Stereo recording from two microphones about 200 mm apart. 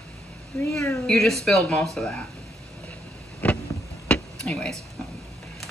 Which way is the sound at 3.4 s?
5° left (ahead or behind).